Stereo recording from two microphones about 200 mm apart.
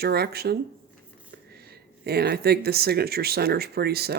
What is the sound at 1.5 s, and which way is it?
Speech, 50° right (ahead or behind).